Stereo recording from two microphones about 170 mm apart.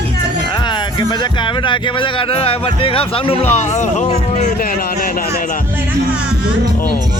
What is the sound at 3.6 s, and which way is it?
Speech, 45° left (ahead or behind).